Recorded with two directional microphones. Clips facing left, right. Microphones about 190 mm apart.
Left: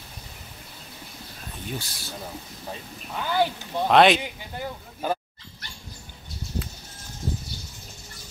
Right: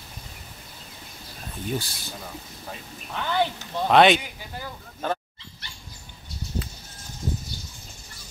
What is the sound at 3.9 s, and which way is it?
Speech, centre (ahead or behind).